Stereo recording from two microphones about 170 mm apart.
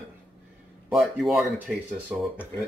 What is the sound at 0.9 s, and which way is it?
Speech, centre (ahead or behind).